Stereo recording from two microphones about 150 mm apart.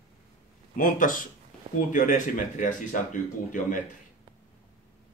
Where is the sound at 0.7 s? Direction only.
65° left (ahead or behind).